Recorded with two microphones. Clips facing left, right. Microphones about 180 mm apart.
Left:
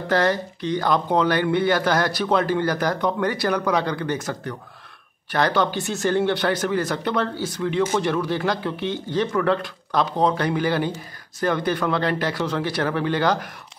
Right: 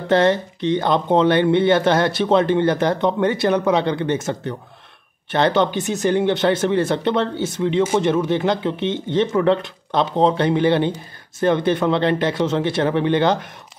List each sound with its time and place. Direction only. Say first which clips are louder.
0.1 s speech: right 5 dB; 25° right (ahead or behind)